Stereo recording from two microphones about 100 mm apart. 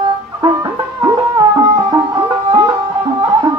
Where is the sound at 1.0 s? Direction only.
35° right (ahead or behind).